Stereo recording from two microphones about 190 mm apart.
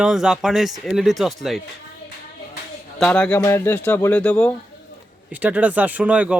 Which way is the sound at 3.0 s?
5° left (ahead or behind).